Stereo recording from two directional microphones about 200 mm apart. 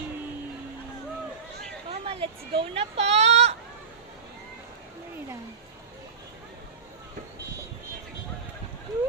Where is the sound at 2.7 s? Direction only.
30° right (ahead or behind).